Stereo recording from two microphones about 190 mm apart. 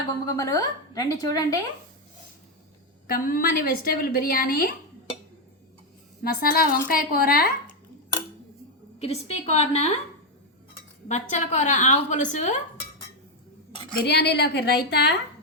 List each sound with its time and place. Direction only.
0.3 s a woman's voice: 20° left (ahead or behind)
3.1 s a woman's voice: 50° left (ahead or behind)
6.2 s a woman's voice: 50° left (ahead or behind)
9.0 s a woman's voice: 35° left (ahead or behind)
11.1 s a woman's voice: 40° left (ahead or behind)
13.9 s a woman's voice: 60° left (ahead or behind)